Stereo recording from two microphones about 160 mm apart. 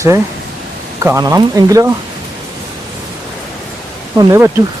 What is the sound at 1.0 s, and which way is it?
Speech, 20° right (ahead or behind).